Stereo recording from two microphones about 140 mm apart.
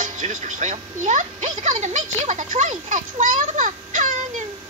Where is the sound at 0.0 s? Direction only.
60° right (ahead or behind).